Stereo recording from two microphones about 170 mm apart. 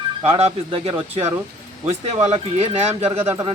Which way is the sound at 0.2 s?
35° right (ahead or behind).